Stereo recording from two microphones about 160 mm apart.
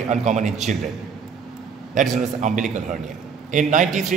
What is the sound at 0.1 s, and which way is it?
Speech, 50° right (ahead or behind).